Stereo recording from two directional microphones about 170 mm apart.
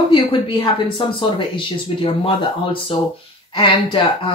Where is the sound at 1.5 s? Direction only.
30° left (ahead or behind).